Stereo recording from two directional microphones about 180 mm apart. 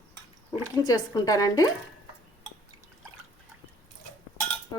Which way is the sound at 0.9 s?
20° left (ahead or behind).